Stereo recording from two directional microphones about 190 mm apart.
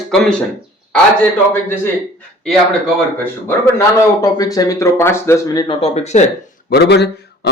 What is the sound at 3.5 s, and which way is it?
A man's voice, 15° left (ahead or behind).